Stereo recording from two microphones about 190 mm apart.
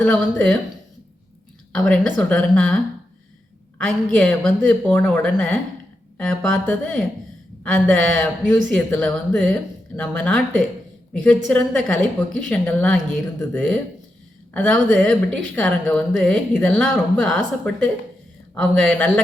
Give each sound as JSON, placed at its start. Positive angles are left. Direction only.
{"t": 0.0, "sound": "speech", "side_deg": 5}
{"t": 1.7, "sound": "speech", "side_deg": 0}
{"t": 3.8, "sound": "speech", "side_deg": 5}